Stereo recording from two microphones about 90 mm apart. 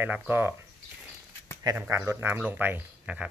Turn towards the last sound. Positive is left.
turn(degrees=-15)  # may be behind; listen again after turning